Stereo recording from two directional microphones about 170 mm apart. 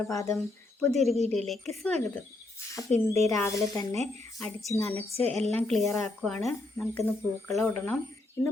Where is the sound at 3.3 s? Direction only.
20° left (ahead or behind).